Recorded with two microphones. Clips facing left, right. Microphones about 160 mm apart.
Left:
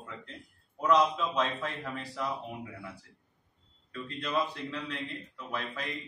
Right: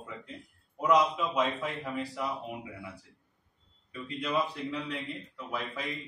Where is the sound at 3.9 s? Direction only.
10° right (ahead or behind).